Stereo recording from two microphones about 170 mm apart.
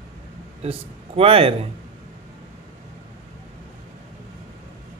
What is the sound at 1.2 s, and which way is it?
Speech, 35° right (ahead or behind).